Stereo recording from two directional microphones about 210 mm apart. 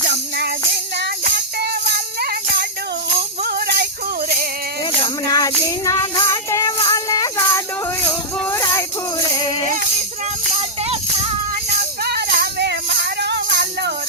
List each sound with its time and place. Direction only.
0.1 s music: 55° right (ahead or behind)
5.3 s music: 15° left (ahead or behind)
12.0 s music: 50° right (ahead or behind)